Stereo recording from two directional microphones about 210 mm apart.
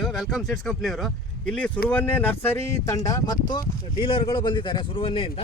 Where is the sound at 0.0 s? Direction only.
Centre (ahead or behind).